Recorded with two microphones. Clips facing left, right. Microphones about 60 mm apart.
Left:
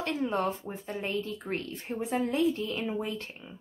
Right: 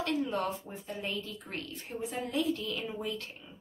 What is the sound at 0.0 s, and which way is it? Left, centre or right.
Speech, left.